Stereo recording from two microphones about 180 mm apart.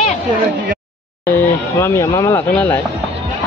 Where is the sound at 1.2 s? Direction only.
15° left (ahead or behind).